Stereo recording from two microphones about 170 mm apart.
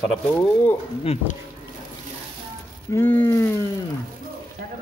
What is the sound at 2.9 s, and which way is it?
Speech, 15° left (ahead or behind).